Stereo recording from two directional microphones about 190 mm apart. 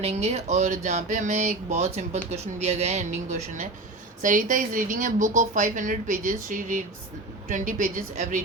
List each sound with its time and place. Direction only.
0.0 s speech: 35° right (ahead or behind)